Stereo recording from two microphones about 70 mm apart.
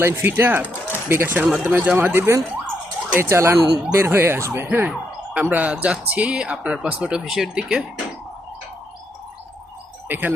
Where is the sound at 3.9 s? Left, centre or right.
Right.